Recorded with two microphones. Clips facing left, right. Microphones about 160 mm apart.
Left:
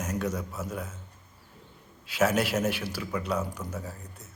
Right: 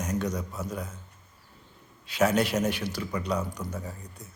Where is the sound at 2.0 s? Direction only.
5° left (ahead or behind).